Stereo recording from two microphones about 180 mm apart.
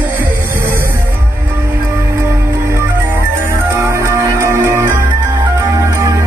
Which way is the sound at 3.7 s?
15° right (ahead or behind).